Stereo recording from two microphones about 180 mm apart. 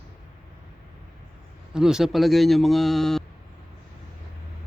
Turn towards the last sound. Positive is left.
turn(degrees=0)  # may be behind; listen again after turning